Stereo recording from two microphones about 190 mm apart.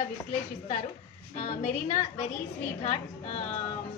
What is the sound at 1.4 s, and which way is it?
A woman's voice, 40° left (ahead or behind).